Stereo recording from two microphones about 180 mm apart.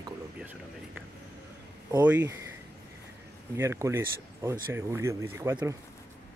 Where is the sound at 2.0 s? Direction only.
15° right (ahead or behind).